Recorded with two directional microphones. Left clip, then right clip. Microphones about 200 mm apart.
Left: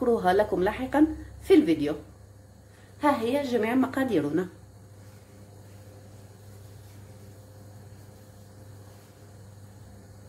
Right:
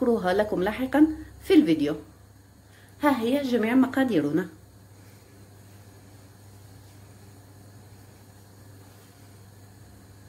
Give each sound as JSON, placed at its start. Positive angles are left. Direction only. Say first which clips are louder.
{"t": 0.0, "sound": "a woman's voice", "louder": "left 1 dB", "side_deg": -15}
{"t": 3.0, "sound": "a woman's voice", "louder": "right 1 dB", "side_deg": -20}